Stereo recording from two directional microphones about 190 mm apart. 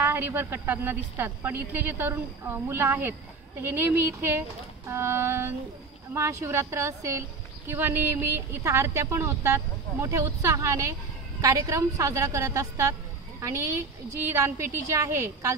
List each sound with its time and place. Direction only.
0.0 s a woman's voice: 10° right (ahead or behind)
14.3 s a woman's voice: 15° right (ahead or behind)